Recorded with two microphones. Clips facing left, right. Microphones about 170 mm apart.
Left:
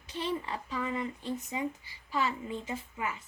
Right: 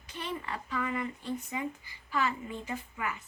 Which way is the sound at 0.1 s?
25° left (ahead or behind).